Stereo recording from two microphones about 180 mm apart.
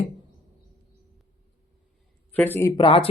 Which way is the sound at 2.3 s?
10° left (ahead or behind).